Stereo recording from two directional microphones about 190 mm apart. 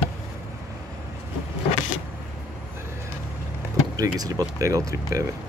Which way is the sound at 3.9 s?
20° right (ahead or behind).